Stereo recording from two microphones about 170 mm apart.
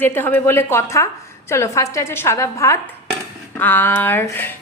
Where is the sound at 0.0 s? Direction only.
15° left (ahead or behind).